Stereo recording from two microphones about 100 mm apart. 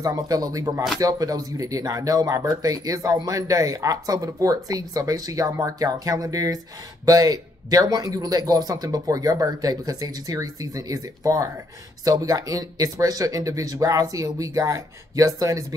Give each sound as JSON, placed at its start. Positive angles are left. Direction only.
{"t": 0.0, "sound": "speech", "side_deg": -35}